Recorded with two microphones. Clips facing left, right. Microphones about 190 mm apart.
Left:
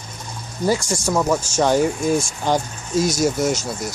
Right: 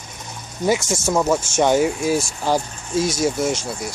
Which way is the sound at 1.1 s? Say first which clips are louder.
Right 1 dB; 5° right (ahead or behind).